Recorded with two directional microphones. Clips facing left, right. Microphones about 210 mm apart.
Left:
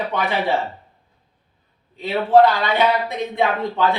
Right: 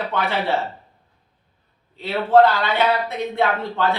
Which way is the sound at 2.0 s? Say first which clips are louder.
Left 1 dB; 15° left (ahead or behind).